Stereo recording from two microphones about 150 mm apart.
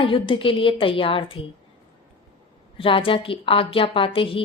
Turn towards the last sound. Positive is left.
turn(degrees=35)  # may be behind; listen again after turning